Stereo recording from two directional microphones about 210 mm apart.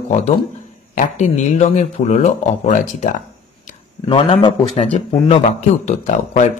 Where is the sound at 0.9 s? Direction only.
35° left (ahead or behind).